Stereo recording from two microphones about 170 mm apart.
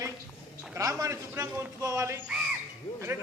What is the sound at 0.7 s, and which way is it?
A man's voice, 20° right (ahead or behind).